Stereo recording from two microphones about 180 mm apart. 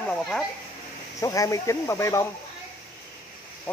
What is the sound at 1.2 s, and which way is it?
Speech, 20° left (ahead or behind).